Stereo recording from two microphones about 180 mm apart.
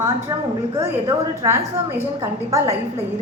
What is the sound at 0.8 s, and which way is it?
A woman's voice, 15° right (ahead or behind).